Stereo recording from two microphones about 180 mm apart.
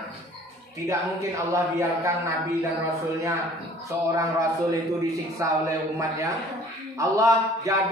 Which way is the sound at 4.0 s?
15° right (ahead or behind).